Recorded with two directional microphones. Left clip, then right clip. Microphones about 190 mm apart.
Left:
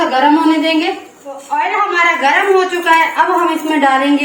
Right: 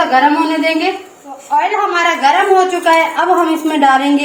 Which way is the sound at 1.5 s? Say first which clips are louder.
Right 1 dB; 55° right (ahead or behind).